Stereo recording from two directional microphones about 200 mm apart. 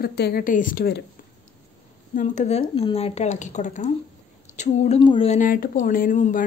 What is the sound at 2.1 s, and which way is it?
Speech, 35° left (ahead or behind).